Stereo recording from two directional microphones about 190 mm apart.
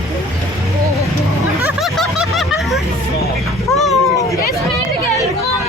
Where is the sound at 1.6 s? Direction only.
5° right (ahead or behind).